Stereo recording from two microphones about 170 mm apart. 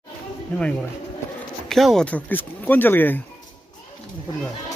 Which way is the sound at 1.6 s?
Centre (ahead or behind).